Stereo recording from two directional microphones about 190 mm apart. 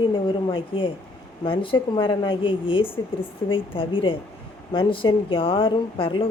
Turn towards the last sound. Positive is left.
turn(degrees=30)  # may be behind; listen again after turning